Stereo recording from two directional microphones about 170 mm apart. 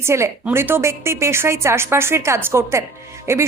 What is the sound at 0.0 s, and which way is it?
A woman's voice, 15° right (ahead or behind).